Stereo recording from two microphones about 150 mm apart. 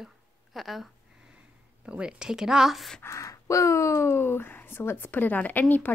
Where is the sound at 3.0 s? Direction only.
20° left (ahead or behind).